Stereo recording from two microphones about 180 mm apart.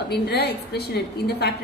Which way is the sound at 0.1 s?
65° left (ahead or behind).